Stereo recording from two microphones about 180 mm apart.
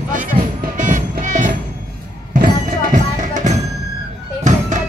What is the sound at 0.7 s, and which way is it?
Music, 45° right (ahead or behind).